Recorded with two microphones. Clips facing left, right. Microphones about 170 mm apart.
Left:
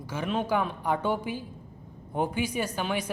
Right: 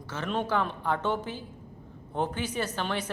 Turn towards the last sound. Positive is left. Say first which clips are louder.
# left 2 dB
turn(degrees=10)  # may be behind; listen again after turning